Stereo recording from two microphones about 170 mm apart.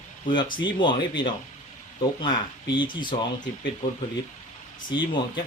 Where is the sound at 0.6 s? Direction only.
30° left (ahead or behind).